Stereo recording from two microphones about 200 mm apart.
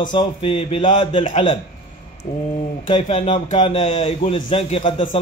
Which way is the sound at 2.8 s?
30° left (ahead or behind).